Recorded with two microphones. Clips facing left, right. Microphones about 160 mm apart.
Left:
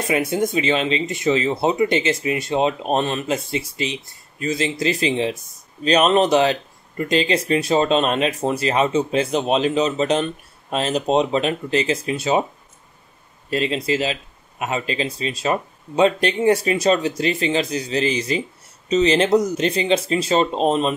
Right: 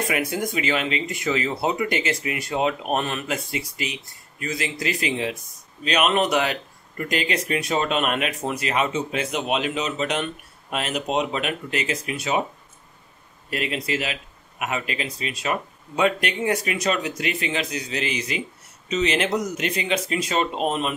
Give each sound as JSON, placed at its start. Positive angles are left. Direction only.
{"t": 0.1, "sound": "speech", "side_deg": 25}
{"t": 13.5, "sound": "speech", "side_deg": 30}